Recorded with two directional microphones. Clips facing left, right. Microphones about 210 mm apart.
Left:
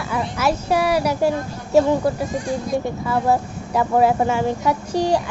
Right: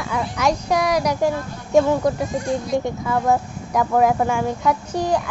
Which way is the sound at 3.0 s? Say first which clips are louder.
Even; 5° left (ahead or behind).